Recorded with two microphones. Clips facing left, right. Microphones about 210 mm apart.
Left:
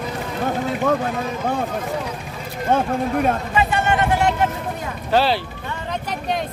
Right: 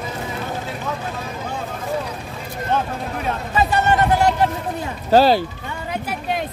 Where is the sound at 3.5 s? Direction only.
40° right (ahead or behind).